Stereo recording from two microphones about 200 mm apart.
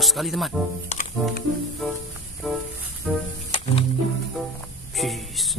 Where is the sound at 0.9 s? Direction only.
40° left (ahead or behind).